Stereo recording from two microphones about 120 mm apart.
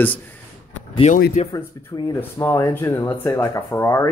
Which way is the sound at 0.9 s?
65° left (ahead or behind).